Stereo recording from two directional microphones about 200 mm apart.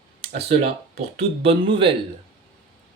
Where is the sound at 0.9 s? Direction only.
30° right (ahead or behind).